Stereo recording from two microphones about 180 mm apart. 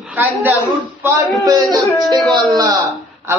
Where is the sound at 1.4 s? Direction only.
20° right (ahead or behind).